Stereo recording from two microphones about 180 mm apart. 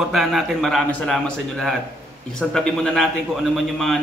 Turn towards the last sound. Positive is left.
turn(degrees=0)  # may be behind; listen again after turning